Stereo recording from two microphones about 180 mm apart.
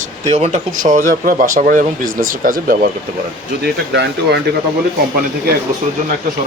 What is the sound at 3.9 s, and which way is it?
Speech, 70° right (ahead or behind).